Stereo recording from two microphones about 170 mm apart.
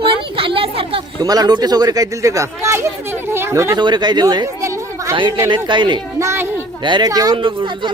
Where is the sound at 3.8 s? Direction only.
25° right (ahead or behind).